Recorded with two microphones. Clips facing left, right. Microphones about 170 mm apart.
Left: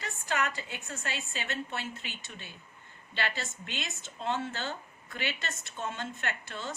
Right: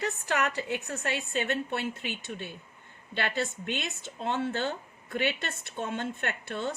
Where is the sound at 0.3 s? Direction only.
65° right (ahead or behind).